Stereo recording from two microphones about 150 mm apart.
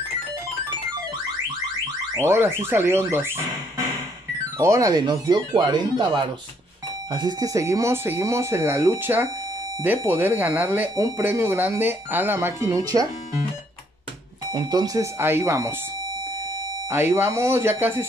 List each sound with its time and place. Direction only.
2.1 s speech: 15° right (ahead or behind)
14.5 s speech: 30° right (ahead or behind)
16.9 s speech: 15° right (ahead or behind)